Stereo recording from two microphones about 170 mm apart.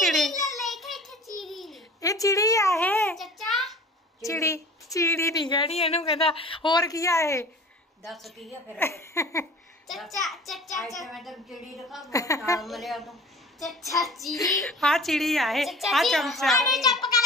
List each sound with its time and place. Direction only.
0.0 s a sound: centre (ahead or behind)
0.6 s child singing: centre (ahead or behind)
1.3 s a sound: centre (ahead or behind)
2.0 s a sound: 20° left (ahead or behind)
3.2 s a sound: centre (ahead or behind)
4.3 s a woman's voice: 15° left (ahead or behind)
8.0 s a woman's voice: centre (ahead or behind)
8.7 s speech: 15° left (ahead or behind)
9.8 s a child's voice: centre (ahead or behind)
12.1 s a woman's voice: 20° left (ahead or behind)
12.6 s a woman's voice: centre (ahead or behind)
14.0 s a woman's voice: centre (ahead or behind)